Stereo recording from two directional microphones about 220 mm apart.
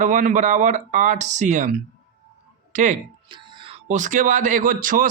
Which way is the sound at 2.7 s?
35° right (ahead or behind).